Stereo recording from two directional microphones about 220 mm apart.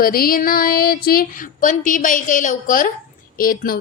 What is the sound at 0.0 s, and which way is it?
A woman's voice, 40° left (ahead or behind).